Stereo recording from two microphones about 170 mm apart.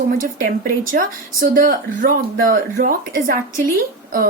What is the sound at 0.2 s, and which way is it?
Speech, 55° right (ahead or behind).